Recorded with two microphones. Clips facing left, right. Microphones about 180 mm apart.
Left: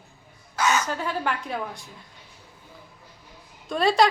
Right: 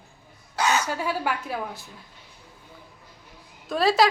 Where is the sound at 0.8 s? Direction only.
10° right (ahead or behind).